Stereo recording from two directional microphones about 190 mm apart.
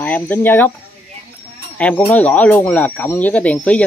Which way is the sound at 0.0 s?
10° left (ahead or behind).